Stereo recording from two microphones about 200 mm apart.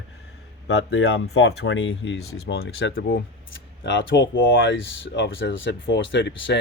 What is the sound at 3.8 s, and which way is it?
Speech, 60° left (ahead or behind).